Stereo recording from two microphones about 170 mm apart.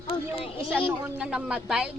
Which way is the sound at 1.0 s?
10° right (ahead or behind).